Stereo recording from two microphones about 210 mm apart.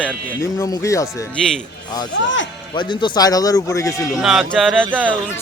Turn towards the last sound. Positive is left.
turn(degrees=-5)  # may be behind; listen again after turning